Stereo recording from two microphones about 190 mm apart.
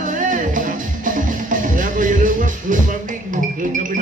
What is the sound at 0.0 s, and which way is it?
Music, 45° right (ahead or behind).